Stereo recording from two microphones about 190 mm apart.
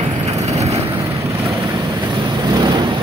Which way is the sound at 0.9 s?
15° right (ahead or behind).